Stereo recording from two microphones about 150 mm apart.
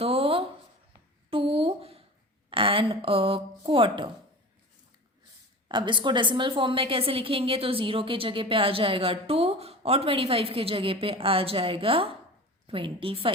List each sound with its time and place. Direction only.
0.0 s a sound: 40° right (ahead or behind)
2.5 s speech: 35° right (ahead or behind)
5.6 s a woman's voice: 30° right (ahead or behind)